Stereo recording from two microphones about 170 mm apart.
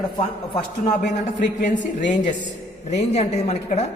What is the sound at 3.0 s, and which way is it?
Speech, 40° left (ahead or behind).